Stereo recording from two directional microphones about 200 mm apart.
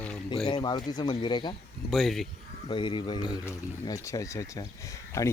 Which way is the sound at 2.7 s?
25° left (ahead or behind).